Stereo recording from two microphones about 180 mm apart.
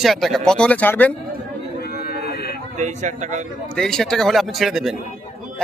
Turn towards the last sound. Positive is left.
turn(degrees=0)  # may be behind; listen again after turning